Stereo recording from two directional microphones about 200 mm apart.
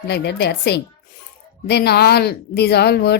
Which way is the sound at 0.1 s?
55° left (ahead or behind).